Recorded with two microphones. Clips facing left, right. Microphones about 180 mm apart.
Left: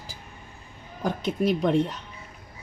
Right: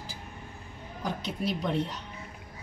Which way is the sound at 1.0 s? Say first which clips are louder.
Left 7 dB; 50° left (ahead or behind).